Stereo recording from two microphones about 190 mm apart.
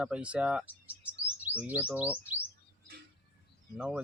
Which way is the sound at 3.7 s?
5° right (ahead or behind).